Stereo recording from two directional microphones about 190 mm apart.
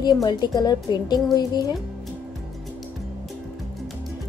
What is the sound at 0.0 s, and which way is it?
A woman's voice, 20° left (ahead or behind).